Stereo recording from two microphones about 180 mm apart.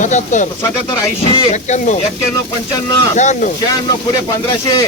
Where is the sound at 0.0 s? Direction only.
45° left (ahead or behind).